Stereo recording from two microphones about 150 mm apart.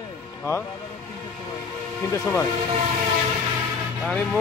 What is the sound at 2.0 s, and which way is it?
Speech, 20° left (ahead or behind).